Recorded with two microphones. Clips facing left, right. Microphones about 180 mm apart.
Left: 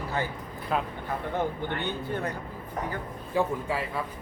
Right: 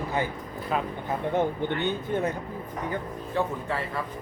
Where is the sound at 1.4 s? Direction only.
20° right (ahead or behind).